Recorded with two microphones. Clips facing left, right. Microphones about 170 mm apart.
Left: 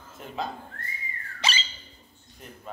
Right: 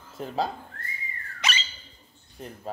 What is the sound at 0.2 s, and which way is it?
Speech, 35° right (ahead or behind).